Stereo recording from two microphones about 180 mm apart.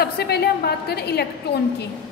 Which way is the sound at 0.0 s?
65° left (ahead or behind).